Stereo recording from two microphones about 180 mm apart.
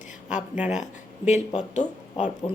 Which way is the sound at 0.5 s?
10° right (ahead or behind).